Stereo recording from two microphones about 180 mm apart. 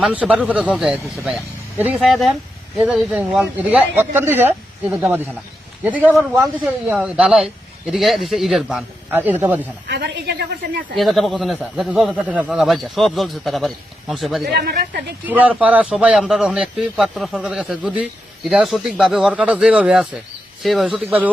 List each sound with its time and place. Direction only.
0.0 s speech: 5° right (ahead or behind)
9.9 s speech: 65° right (ahead or behind)
10.9 s speech: centre (ahead or behind)
14.5 s speech: 60° right (ahead or behind)
15.3 s speech: 10° right (ahead or behind)